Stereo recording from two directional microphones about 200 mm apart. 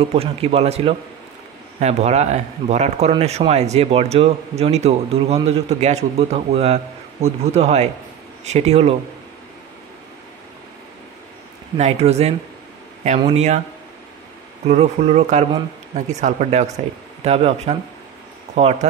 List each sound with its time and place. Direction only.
0.1 s a man's voice: 30° right (ahead or behind)
11.7 s speech: 30° right (ahead or behind)
14.7 s speech: 30° right (ahead or behind)